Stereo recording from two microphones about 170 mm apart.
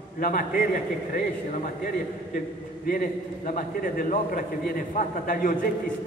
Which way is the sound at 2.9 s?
60° left (ahead or behind).